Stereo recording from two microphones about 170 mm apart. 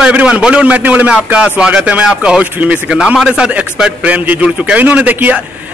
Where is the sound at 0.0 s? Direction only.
5° right (ahead or behind).